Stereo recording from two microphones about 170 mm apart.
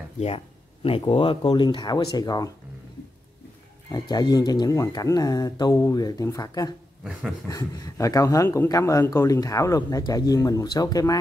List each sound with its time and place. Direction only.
0.8 s speech: 35° left (ahead or behind)
3.9 s speech: 25° left (ahead or behind)
7.0 s a sound: 5° right (ahead or behind)
7.4 s speech: 20° left (ahead or behind)